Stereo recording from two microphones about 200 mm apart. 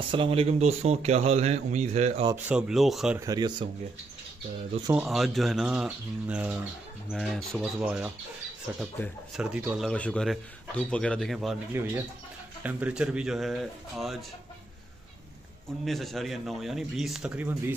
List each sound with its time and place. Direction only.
0.1 s speech: 25° right (ahead or behind)
2.3 s speech: 5° right (ahead or behind)
3.2 s speech: 20° right (ahead or behind)
4.9 s speech: centre (ahead or behind)
9.8 s speech: 5° left (ahead or behind)
11.7 s speech: 10° right (ahead or behind)
15.8 s speech: centre (ahead or behind)